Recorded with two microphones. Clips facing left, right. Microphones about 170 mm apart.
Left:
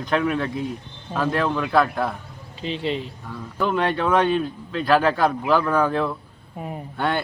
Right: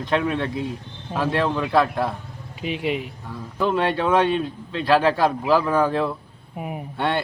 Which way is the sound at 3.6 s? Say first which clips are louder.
Right 1 dB; centre (ahead or behind).